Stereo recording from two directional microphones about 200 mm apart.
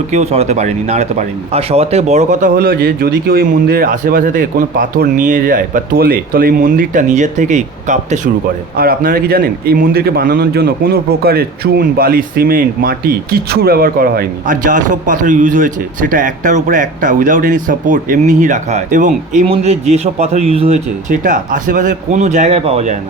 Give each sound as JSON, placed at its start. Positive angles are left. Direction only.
{"t": 0.1, "sound": "a man's voice", "side_deg": -35}
{"t": 8.7, "sound": "a man's voice", "side_deg": -50}